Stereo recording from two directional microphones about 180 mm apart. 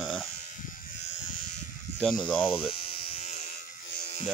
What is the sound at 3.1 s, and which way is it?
Electric shaver, 40° left (ahead or behind).